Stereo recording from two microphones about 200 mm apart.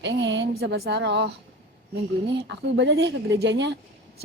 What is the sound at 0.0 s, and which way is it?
Speech, 60° right (ahead or behind).